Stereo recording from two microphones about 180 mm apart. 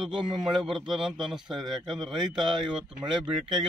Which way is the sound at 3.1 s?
5° right (ahead or behind).